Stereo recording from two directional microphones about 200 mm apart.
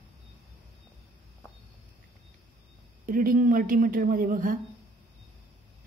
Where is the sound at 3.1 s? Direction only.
45° right (ahead or behind).